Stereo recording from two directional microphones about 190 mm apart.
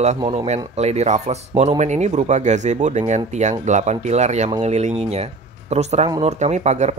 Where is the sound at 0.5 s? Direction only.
35° right (ahead or behind).